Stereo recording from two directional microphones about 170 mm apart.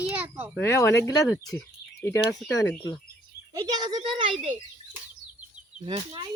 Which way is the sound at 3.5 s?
25° right (ahead or behind).